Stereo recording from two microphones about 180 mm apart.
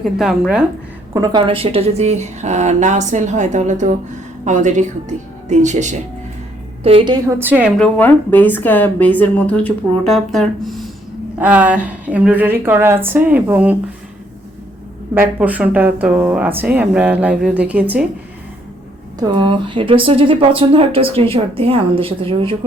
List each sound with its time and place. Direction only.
0.0 s speech: centre (ahead or behind)
1.1 s a woman's voice: 20° right (ahead or behind); by 6.0 s 40° right (ahead or behind)
6.8 s speech: 30° right (ahead or behind)
7.3 s speech: 10° right (ahead or behind)
7.8 s a woman's voice: 10° left (ahead or behind); by 13.7 s 10° right (ahead or behind)
15.1 s speech: 10° right (ahead or behind)
19.2 s a woman's voice: 25° right (ahead or behind)